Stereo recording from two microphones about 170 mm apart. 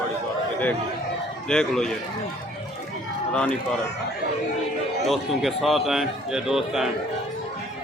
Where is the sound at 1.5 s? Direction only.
5° left (ahead or behind).